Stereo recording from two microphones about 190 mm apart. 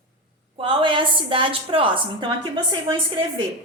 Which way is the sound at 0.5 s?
25° right (ahead or behind).